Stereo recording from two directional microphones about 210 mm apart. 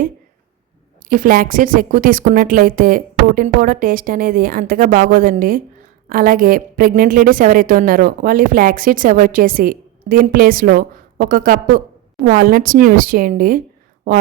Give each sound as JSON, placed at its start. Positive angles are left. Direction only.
{"t": 1.1, "sound": "a woman's voice", "side_deg": -40}